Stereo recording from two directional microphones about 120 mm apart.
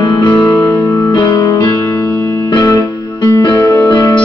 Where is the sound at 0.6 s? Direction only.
20° left (ahead or behind).